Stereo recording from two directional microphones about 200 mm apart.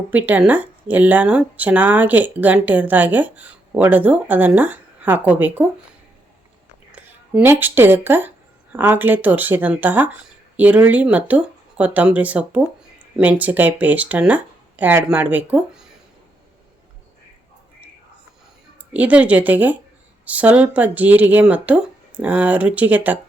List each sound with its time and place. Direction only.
0.1 s speech: 10° right (ahead or behind)
7.3 s speech: 10° right (ahead or behind)
18.9 s speech: 5° right (ahead or behind)